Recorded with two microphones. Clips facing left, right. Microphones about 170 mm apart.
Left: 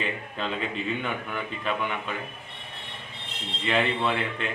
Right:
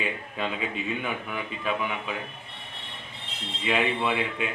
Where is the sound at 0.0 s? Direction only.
5° right (ahead or behind).